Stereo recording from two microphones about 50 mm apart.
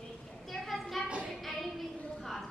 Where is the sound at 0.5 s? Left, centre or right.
Centre.